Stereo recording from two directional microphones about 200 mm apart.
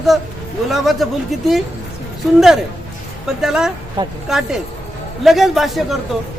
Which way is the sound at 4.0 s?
20° right (ahead or behind).